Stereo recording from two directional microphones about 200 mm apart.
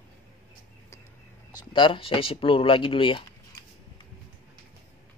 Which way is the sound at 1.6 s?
25° left (ahead or behind).